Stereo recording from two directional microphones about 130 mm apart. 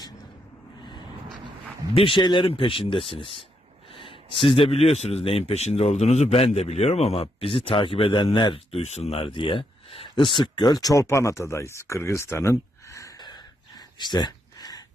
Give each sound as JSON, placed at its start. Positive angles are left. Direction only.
{"t": 1.9, "sound": "a man's voice", "side_deg": 45}
{"t": 8.7, "sound": "speech", "side_deg": 55}